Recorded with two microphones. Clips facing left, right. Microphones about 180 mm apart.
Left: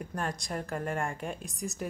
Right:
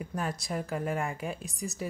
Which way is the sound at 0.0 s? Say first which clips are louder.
Right 1 dB; 5° right (ahead or behind).